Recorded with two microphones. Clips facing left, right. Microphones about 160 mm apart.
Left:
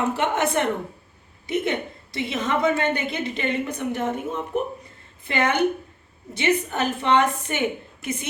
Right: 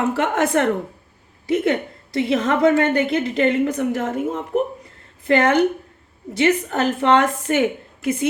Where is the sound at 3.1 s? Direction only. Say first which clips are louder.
Right 8 dB; 75° right (ahead or behind).